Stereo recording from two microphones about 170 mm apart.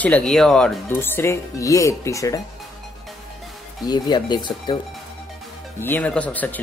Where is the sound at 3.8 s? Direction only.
25° left (ahead or behind).